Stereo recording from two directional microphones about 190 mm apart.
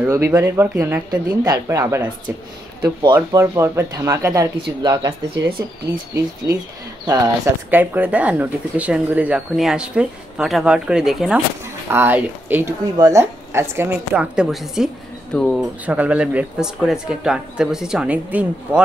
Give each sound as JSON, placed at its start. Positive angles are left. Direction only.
{"t": 0.0, "sound": "speech", "side_deg": -15}
{"t": 5.4, "sound": "speech", "side_deg": -55}
{"t": 6.1, "sound": "speech", "side_deg": -15}
{"t": 7.7, "sound": "speech", "side_deg": -10}
{"t": 15.8, "sound": "speech", "side_deg": -5}